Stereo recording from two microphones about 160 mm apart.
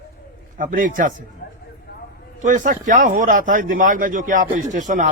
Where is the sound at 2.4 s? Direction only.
55° right (ahead or behind).